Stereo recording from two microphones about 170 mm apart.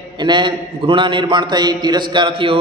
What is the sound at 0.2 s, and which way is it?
Mantra, 25° right (ahead or behind).